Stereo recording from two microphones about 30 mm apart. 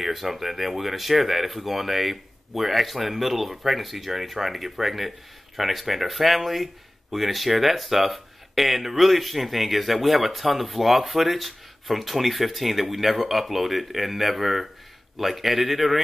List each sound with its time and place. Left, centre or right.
0.0 s speech: centre